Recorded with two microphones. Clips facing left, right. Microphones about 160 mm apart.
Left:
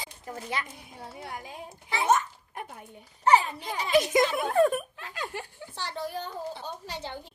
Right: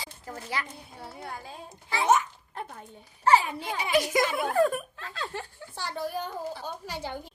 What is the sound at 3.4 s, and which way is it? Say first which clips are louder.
Speech: right 1 dB; 10° right (ahead or behind).